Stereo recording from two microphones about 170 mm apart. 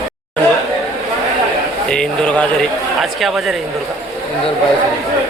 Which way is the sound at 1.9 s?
5° left (ahead or behind).